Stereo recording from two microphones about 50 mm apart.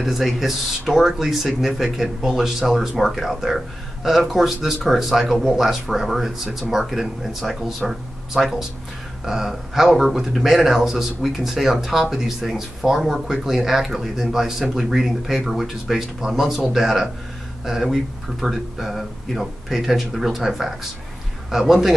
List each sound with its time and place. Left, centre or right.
0.0 s speech: centre